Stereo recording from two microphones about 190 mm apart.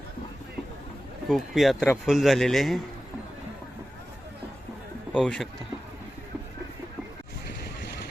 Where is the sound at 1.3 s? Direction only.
Centre (ahead or behind).